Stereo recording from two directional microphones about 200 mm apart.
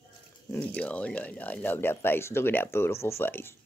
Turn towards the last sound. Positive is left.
turn(degrees=10)  # may be behind; listen again after turning